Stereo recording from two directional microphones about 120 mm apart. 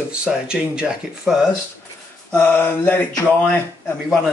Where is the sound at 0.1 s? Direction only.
10° right (ahead or behind).